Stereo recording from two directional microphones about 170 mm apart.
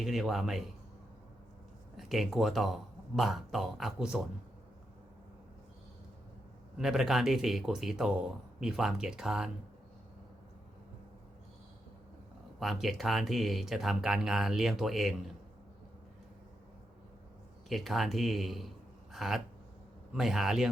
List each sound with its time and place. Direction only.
0.0 s speech: centre (ahead or behind)
2.0 s speech: centre (ahead or behind)
6.7 s speech: centre (ahead or behind)
12.5 s speech: centre (ahead or behind)
17.7 s speech: centre (ahead or behind)